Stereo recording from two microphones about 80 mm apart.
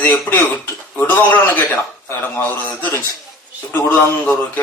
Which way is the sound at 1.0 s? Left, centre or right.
Left.